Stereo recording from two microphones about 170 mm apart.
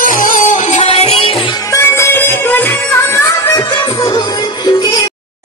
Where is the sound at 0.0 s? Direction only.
50° left (ahead or behind); by 1.8 s 30° left (ahead or behind).